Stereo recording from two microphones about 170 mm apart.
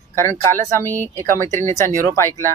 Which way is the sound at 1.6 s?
15° left (ahead or behind).